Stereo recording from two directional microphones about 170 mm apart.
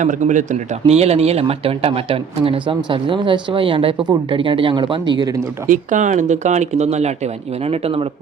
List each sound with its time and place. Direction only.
0.0 s speech: 45° right (ahead or behind); by 5.3 s 25° right (ahead or behind)
5.6 s speech: 50° right (ahead or behind)